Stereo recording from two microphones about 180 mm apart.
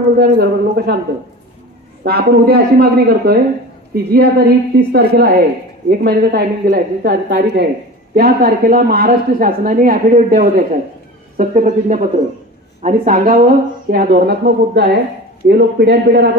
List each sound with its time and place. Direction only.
0.2 s a woman's voice: 65° right (ahead or behind)
2.0 s a woman's voice: 60° right (ahead or behind)